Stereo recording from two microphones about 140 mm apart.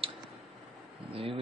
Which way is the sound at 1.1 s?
40° right (ahead or behind).